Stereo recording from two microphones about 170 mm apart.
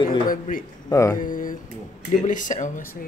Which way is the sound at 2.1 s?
50° left (ahead or behind).